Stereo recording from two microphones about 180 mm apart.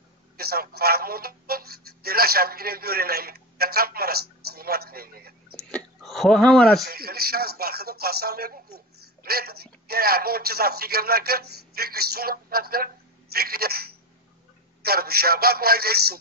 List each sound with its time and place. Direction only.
0.4 s speech: 60° right (ahead or behind)
5.6 s speech: 5° left (ahead or behind)
6.9 s speech: 55° right (ahead or behind)